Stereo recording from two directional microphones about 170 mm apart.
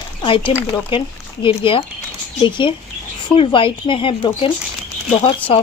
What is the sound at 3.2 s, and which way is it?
Speech, 30° left (ahead or behind).